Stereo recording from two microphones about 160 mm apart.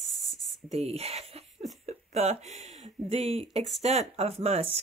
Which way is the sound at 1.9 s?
40° right (ahead or behind).